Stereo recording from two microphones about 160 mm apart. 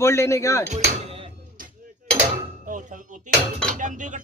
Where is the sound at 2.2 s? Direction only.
55° right (ahead or behind).